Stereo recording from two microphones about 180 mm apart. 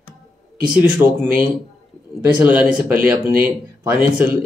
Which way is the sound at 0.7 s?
5° right (ahead or behind).